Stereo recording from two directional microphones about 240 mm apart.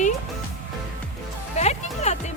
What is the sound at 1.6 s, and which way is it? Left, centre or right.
Speech, left.